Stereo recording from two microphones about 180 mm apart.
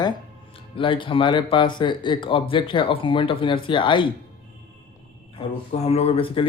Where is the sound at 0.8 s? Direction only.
30° left (ahead or behind).